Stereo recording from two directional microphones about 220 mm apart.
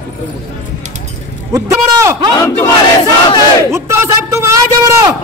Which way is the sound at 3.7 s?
10° right (ahead or behind).